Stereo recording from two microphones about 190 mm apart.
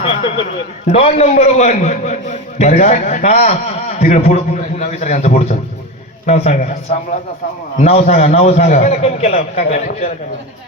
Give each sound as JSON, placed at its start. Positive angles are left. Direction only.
{"t": 0.9, "sound": "a man's voice", "side_deg": 30}